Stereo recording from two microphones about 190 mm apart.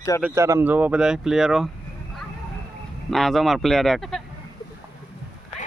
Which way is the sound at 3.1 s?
Centre (ahead or behind).